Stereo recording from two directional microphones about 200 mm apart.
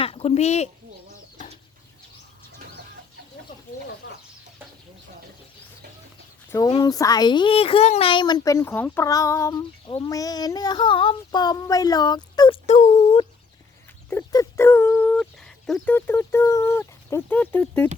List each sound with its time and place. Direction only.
0.0 s speech: 30° left (ahead or behind)
4.0 s chicken: 65° left (ahead or behind)
6.5 s a woman's voice: 20° left (ahead or behind)
12.6 s speech: 35° left (ahead or behind)
14.1 s a sound: 15° left (ahead or behind)